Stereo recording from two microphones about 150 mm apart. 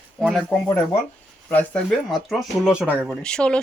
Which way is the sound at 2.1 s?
Centre (ahead or behind).